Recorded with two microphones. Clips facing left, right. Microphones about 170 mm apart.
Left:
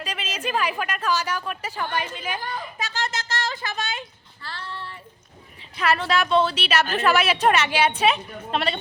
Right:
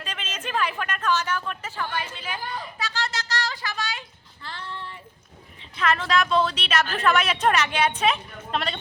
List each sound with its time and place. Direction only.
0.0 s a woman's voice: 10° left (ahead or behind)
2.7 s a sound: 20° left (ahead or behind)
4.4 s child singing: 15° right (ahead or behind)
5.7 s a woman's voice: 5° left (ahead or behind)